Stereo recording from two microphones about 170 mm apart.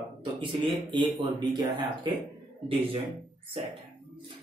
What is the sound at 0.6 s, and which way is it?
A man's voice, 25° right (ahead or behind).